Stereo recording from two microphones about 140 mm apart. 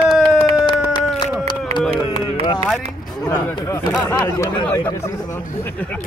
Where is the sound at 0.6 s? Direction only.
35° left (ahead or behind).